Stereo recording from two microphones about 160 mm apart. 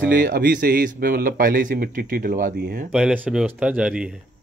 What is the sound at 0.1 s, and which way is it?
A man's voice, 70° right (ahead or behind).